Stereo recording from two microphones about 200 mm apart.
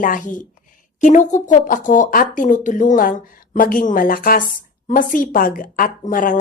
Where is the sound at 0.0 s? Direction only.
40° left (ahead or behind).